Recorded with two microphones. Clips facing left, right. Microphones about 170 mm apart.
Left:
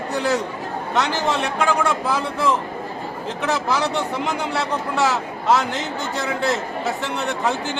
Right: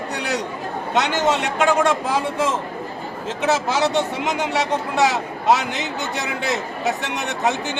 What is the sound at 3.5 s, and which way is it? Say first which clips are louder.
Speech: right 2 dB; 75° right (ahead or behind).